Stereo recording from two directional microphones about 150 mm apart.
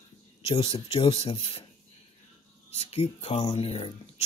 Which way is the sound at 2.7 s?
45° left (ahead or behind).